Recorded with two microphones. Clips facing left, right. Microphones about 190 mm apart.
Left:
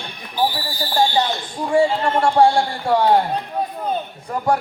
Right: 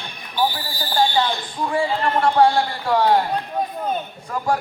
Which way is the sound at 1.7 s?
25° left (ahead or behind).